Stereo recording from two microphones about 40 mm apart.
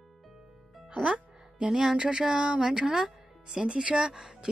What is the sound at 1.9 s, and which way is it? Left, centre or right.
A woman's voice, right.